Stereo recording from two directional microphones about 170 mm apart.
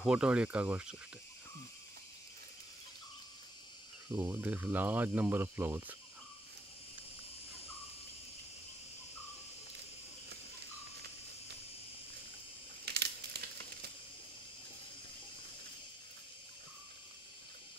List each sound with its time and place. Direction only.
0.0 s speech: 5° right (ahead or behind)
4.1 s speech: 15° right (ahead or behind)
12.8 s crumpling: 75° right (ahead or behind)